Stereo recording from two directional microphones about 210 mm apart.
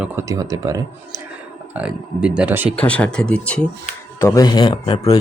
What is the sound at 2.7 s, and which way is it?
Speech, 5° left (ahead or behind).